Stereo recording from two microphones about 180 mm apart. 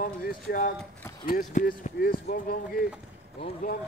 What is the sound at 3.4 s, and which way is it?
Speech, 30° left (ahead or behind).